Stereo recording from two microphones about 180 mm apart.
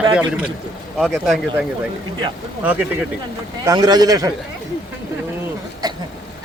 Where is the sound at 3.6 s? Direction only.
20° right (ahead or behind).